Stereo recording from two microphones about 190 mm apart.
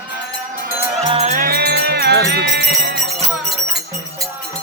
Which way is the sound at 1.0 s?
35° right (ahead or behind).